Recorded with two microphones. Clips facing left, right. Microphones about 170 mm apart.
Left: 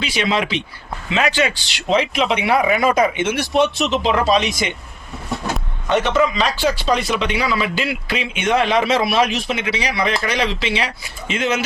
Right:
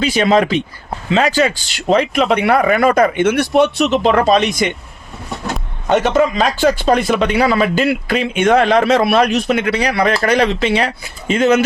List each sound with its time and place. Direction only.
0.0 s speech: 45° right (ahead or behind)
3.6 s speech: centre (ahead or behind)
4.0 s speech: 50° right (ahead or behind)
4.3 s speech: centre (ahead or behind)
5.9 s speech: 45° right (ahead or behind)
8.7 s speech: centre (ahead or behind)
9.5 s speech: 55° right (ahead or behind)